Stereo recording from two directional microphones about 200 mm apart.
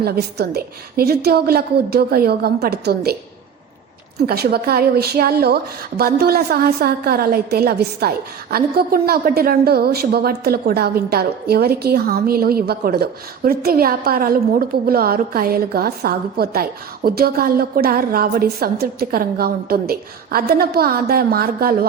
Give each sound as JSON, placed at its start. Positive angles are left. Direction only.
{"t": 0.0, "sound": "a woman's voice", "side_deg": -55}
{"t": 4.3, "sound": "a woman's voice", "side_deg": -50}